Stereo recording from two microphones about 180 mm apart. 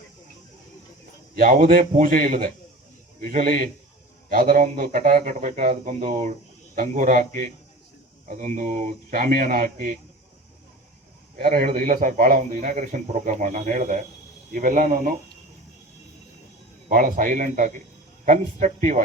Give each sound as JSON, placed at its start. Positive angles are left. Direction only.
{"t": 1.4, "sound": "speech", "side_deg": -50}
{"t": 11.3, "sound": "speech", "side_deg": -55}
{"t": 16.9, "sound": "speech", "side_deg": -50}